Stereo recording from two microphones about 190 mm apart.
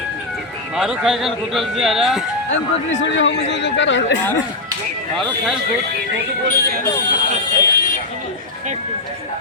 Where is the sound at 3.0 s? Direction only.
75° left (ahead or behind).